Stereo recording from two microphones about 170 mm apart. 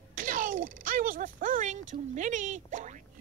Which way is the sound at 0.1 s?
55° right (ahead or behind).